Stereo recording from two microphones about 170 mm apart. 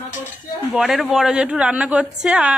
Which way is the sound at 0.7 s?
Centre (ahead or behind).